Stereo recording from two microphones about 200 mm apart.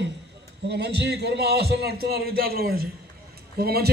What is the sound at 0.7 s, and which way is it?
A man's voice, 55° right (ahead or behind).